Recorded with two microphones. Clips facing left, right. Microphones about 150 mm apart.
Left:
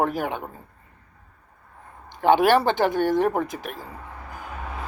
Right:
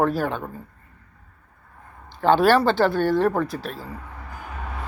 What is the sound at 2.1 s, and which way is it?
Speech, 15° left (ahead or behind).